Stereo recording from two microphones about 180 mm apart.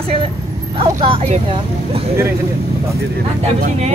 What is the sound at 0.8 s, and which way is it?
Speech, 35° right (ahead or behind).